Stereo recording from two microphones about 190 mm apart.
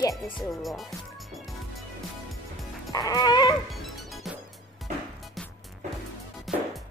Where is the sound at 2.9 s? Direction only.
20° left (ahead or behind).